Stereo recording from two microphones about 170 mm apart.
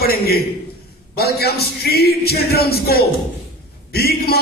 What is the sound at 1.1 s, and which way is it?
Music, 70° left (ahead or behind).